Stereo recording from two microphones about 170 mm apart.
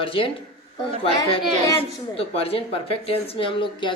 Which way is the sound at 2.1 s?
35° left (ahead or behind).